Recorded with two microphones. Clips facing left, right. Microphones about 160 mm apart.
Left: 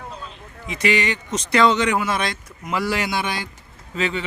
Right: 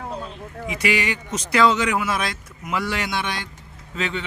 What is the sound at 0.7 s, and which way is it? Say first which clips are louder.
A man's voice: left 2 dB; 10° right (ahead or behind).